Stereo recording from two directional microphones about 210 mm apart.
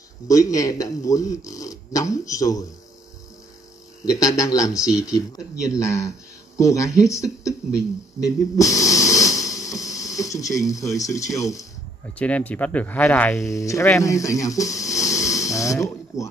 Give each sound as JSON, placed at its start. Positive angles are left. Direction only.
{"t": 0.3, "sound": "speech", "side_deg": 15}
{"t": 4.0, "sound": "speech", "side_deg": 15}